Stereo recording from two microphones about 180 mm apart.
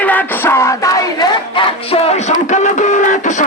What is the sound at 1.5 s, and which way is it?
Music, 35° left (ahead or behind).